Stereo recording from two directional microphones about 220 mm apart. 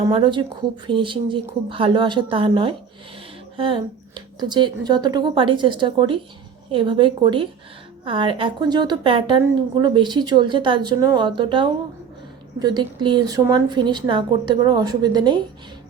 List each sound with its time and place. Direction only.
0.1 s a woman's voice: 20° right (ahead or behind)